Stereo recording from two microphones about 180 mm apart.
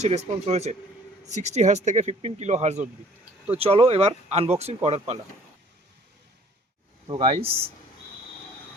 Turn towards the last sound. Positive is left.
turn(degrees=-30)  # may be behind; listen again after turning